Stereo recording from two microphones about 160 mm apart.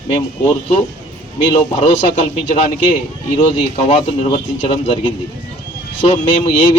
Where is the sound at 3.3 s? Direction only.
35° left (ahead or behind).